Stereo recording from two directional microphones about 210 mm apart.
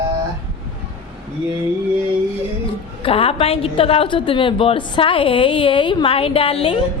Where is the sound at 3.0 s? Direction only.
25° left (ahead or behind).